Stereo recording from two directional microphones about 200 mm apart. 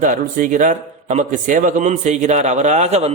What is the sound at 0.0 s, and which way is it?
A man's voice, 40° right (ahead or behind).